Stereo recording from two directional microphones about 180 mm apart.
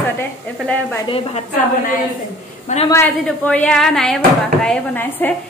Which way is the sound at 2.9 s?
10° left (ahead or behind).